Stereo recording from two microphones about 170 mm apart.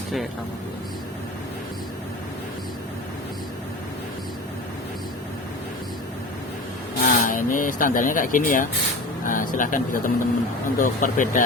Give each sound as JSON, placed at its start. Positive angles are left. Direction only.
{"t": 7.0, "sound": "speech", "side_deg": 55}